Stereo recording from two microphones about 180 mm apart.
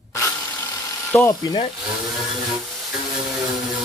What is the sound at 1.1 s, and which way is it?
Speech, 15° left (ahead or behind).